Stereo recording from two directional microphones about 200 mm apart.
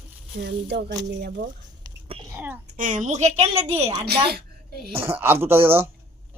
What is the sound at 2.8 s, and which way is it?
A woman's voice, 40° right (ahead or behind).